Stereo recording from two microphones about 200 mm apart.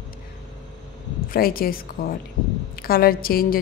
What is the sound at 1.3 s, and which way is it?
A woman's voice, 45° left (ahead or behind).